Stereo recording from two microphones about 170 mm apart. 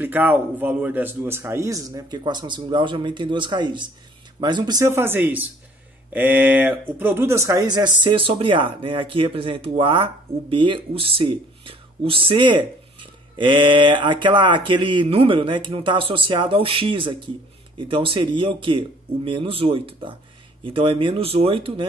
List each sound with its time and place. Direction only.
0.0 s speech: 10° right (ahead or behind); by 21.8 s 30° right (ahead or behind)